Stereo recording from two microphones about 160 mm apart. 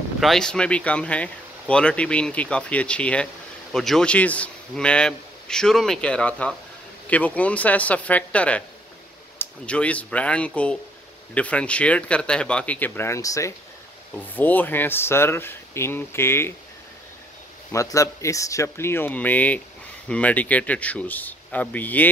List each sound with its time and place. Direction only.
0.2 s a man's voice: 5° left (ahead or behind)
17.7 s speech: 20° left (ahead or behind)